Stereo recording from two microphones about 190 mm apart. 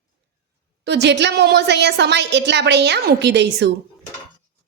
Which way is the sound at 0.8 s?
60° right (ahead or behind).